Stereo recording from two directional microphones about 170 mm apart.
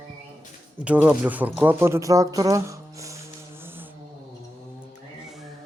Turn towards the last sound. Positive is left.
turn(degrees=-10)  # may be behind; listen again after turning